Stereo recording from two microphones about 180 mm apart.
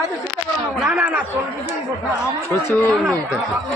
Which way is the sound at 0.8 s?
5° right (ahead or behind).